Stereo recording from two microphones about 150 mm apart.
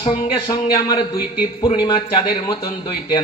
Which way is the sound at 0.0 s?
30° left (ahead or behind).